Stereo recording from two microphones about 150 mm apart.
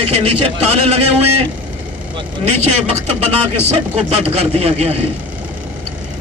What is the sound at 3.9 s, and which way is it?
Speech, 40° right (ahead or behind).